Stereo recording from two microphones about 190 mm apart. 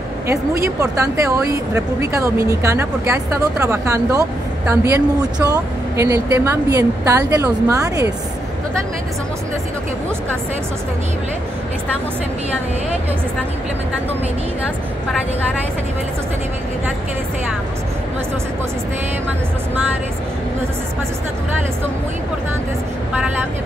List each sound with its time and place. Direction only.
0.3 s speech: 15° right (ahead or behind)